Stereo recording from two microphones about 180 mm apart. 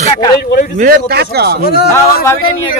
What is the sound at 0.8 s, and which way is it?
Speech, 55° right (ahead or behind).